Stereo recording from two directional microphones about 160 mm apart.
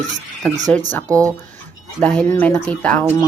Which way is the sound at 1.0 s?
20° right (ahead or behind).